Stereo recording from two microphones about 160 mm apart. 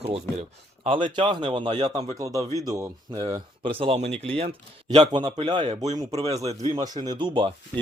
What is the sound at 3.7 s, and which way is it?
Speech, 35° right (ahead or behind).